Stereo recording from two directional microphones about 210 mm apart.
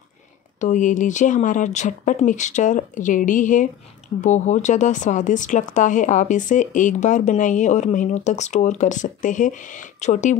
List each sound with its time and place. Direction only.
0.6 s speech: 35° left (ahead or behind)